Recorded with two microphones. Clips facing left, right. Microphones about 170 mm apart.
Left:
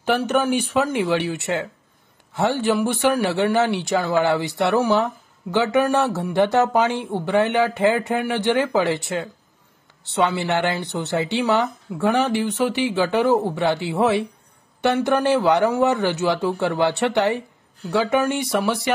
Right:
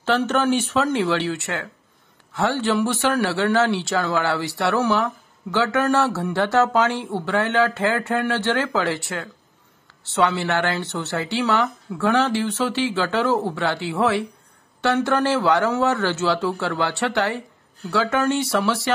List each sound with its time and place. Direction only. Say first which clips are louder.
0.0 s a man's voice: even; 15° left (ahead or behind)